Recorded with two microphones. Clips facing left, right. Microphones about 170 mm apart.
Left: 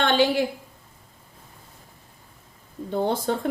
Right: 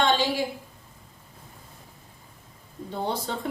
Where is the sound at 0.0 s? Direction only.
60° left (ahead or behind).